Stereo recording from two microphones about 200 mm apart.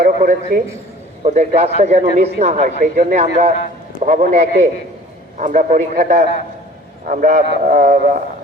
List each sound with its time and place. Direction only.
0.0 s a man's voice: 40° right (ahead or behind)